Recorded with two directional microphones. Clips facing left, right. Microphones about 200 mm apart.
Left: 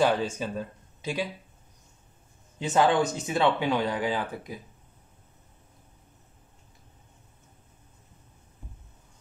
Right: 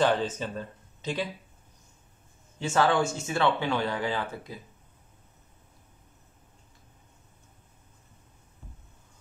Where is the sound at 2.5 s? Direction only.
20° left (ahead or behind).